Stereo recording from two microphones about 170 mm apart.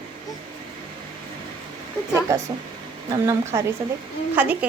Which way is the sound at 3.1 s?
15° right (ahead or behind).